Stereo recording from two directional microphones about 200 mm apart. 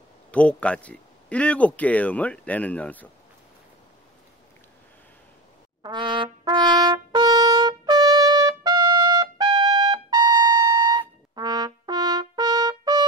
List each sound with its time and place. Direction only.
0.3 s speech: 5° left (ahead or behind)
5.8 s brass instrument: 25° right (ahead or behind)